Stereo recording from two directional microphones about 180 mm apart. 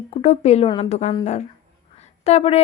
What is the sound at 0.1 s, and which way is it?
Speech, 35° left (ahead or behind).